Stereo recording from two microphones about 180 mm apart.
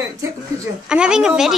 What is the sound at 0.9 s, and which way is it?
Speech, 5° right (ahead or behind).